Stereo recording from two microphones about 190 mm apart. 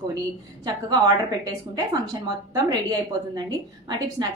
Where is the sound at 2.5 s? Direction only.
20° right (ahead or behind).